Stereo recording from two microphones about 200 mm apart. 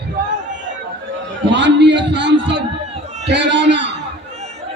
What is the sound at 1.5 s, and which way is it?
A man's voice, 60° right (ahead or behind).